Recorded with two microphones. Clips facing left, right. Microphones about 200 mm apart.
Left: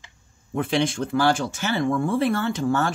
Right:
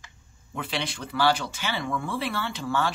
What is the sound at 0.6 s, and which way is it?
Speech, 50° left (ahead or behind).